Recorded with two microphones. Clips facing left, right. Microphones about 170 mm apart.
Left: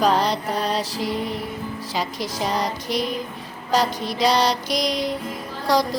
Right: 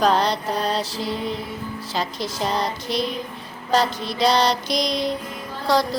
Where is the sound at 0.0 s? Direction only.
10° left (ahead or behind).